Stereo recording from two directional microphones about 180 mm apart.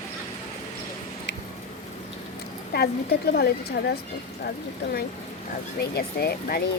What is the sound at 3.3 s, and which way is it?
Speech, 65° left (ahead or behind).